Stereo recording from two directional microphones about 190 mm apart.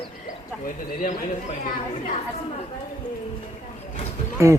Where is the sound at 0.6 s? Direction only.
45° left (ahead or behind).